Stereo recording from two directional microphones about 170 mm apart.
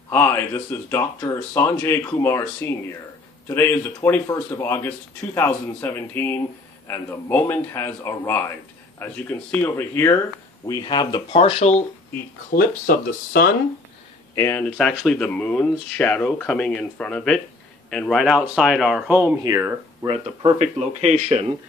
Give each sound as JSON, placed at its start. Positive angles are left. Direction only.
{"t": 0.1, "sound": "speech", "side_deg": 10}
{"t": 10.7, "sound": "speech", "side_deg": 25}
{"t": 12.5, "sound": "speech", "side_deg": 55}
{"t": 14.3, "sound": "speech", "side_deg": 15}
{"t": 20.1, "sound": "speech", "side_deg": -40}